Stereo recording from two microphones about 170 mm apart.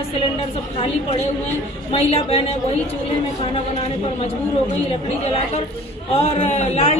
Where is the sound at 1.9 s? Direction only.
35° left (ahead or behind).